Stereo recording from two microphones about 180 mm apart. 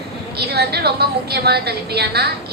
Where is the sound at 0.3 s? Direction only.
65° right (ahead or behind).